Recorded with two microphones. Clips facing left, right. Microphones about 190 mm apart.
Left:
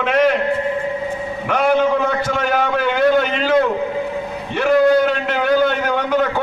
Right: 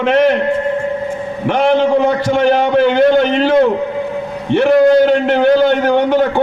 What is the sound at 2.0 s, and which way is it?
A man's voice, 30° right (ahead or behind).